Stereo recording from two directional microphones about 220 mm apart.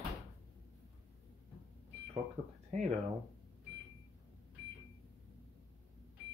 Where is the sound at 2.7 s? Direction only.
30° right (ahead or behind).